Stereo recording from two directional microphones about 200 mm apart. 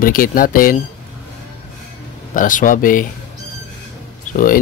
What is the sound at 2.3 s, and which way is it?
Speech, 40° left (ahead or behind).